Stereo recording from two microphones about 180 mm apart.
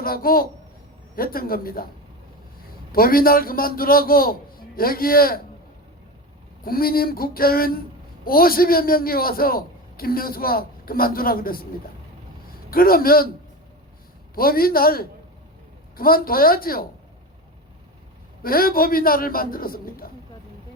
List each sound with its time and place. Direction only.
0.0 s a man's voice: 55° left (ahead or behind)
2.9 s a man's voice: 55° left (ahead or behind)
6.6 s a man's voice: 55° left (ahead or behind)
12.7 s a man's voice: 55° left (ahead or behind)
14.3 s a man's voice: 55° left (ahead or behind)
18.4 s a man's voice: 55° left (ahead or behind)